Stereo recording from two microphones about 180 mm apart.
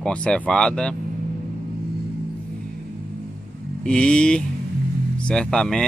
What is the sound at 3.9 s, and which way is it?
Speech, 5° left (ahead or behind).